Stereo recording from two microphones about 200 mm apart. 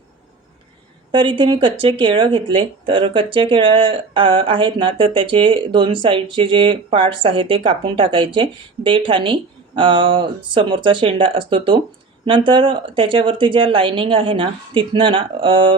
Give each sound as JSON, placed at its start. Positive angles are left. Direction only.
{"t": 1.1, "sound": "speech", "side_deg": -25}